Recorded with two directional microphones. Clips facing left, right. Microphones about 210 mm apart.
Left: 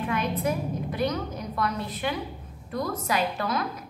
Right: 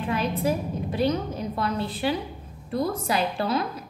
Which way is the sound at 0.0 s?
30° right (ahead or behind).